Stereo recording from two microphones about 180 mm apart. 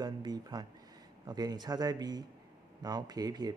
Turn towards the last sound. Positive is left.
turn(degrees=-20)  # may be behind; listen again after turning